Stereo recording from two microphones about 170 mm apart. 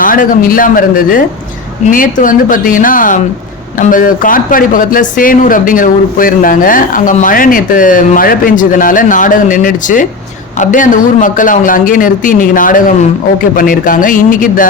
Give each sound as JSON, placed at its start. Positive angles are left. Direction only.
{"t": 0.0, "sound": "speech", "side_deg": 55}